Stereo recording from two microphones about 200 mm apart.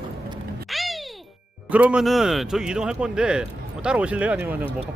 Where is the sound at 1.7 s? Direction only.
5° right (ahead or behind).